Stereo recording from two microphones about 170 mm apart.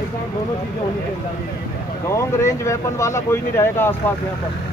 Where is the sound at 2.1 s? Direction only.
15° left (ahead or behind).